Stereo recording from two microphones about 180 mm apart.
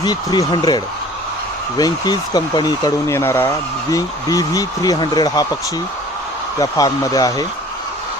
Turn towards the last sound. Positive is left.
turn(degrees=20)  # may be behind; listen again after turning